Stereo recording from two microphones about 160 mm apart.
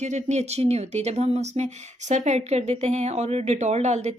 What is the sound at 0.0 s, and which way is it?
Speech, 45° right (ahead or behind).